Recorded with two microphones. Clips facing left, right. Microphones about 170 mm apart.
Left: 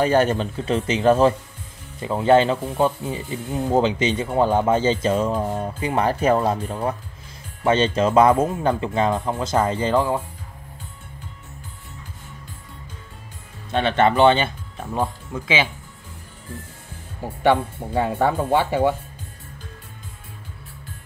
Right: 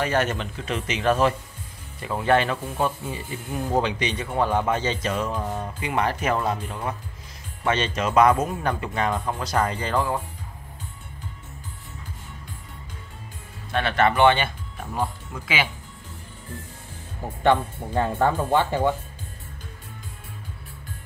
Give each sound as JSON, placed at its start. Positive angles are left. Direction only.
{"t": 0.0, "sound": "a man's voice", "side_deg": 30}
{"t": 13.7, "sound": "speech", "side_deg": 25}
{"t": 17.4, "sound": "speech", "side_deg": 10}